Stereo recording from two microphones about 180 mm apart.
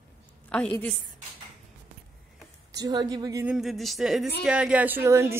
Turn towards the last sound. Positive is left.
turn(degrees=-15)  # may be behind; listen again after turning